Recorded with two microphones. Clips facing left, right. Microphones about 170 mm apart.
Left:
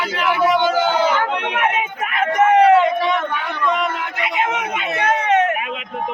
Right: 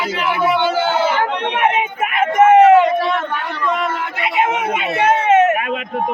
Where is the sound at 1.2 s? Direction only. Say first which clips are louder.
Right 3 dB; 30° right (ahead or behind).